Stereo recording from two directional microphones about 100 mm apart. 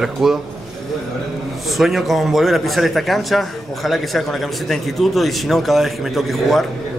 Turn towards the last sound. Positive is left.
turn(degrees=0)  # may be behind; listen again after turning